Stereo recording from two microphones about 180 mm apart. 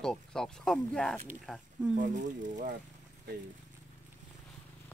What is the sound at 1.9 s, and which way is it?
Speech, 45° right (ahead or behind).